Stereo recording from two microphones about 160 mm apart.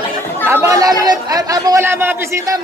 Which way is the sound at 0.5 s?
20° right (ahead or behind).